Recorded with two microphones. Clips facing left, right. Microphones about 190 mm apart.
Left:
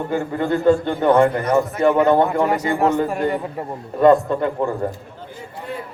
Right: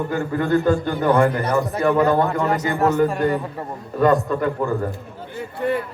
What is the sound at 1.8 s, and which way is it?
Speech, 25° left (ahead or behind).